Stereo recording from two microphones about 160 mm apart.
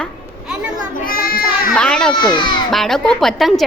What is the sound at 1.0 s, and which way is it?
Speech, 65° left (ahead or behind).